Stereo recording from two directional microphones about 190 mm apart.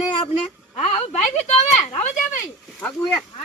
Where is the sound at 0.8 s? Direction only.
30° left (ahead or behind).